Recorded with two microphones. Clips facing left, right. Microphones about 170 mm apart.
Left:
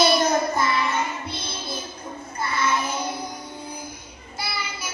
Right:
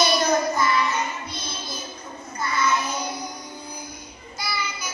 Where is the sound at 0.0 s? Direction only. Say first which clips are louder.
Left 1 dB; 25° left (ahead or behind).